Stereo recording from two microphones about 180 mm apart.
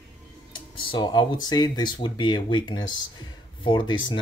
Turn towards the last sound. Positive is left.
turn(degrees=25)  # may be behind; listen again after turning